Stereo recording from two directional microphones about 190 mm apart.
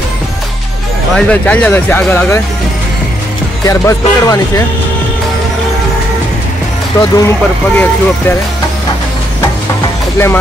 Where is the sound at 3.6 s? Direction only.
15° left (ahead or behind).